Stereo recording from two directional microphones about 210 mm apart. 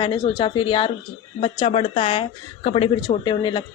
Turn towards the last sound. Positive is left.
turn(degrees=20)  # may be behind; listen again after turning